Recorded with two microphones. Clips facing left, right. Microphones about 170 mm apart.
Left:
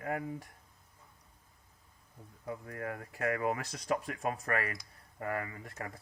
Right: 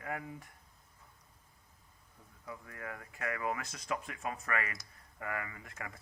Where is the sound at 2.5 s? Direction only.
40° left (ahead or behind).